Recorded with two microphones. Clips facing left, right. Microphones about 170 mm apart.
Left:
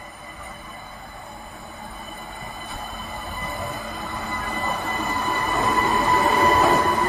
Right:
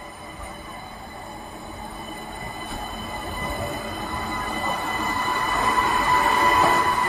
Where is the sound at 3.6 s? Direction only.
Centre (ahead or behind).